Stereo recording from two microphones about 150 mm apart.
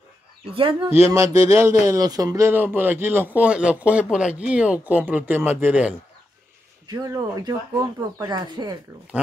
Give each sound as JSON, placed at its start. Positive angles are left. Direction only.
{"t": 0.5, "sound": "speech", "side_deg": -35}
{"t": 0.8, "sound": "a man's voice", "side_deg": -15}
{"t": 6.9, "sound": "speech", "side_deg": -25}